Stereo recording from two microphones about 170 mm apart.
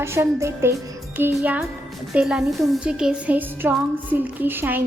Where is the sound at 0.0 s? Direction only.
15° right (ahead or behind).